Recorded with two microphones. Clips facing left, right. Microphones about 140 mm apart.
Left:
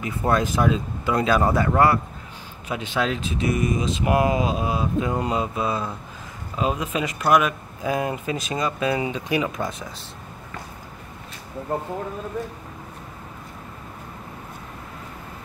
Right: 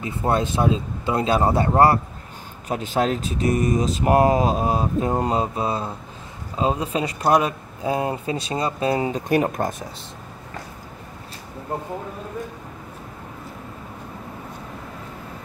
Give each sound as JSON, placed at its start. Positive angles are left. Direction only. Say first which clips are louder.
{"t": 0.0, "sound": "speech", "louder": "even", "side_deg": -25}